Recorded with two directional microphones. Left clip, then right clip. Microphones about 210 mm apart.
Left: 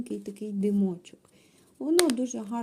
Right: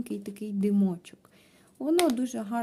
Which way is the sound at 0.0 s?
20° right (ahead or behind).